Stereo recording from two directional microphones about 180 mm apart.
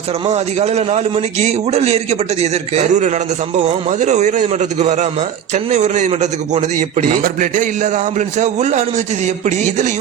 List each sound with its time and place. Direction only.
0.3 s a man's voice: 35° right (ahead or behind)